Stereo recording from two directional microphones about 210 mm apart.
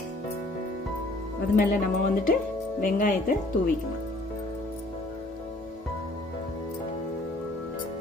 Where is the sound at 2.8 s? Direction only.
40° left (ahead or behind).